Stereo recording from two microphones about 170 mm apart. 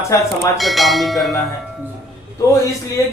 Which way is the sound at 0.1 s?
15° left (ahead or behind).